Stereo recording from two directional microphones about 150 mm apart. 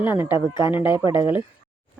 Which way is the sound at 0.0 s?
15° right (ahead or behind).